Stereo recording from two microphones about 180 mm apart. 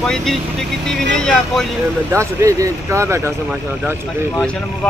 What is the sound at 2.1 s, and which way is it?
Speech, 15° right (ahead or behind).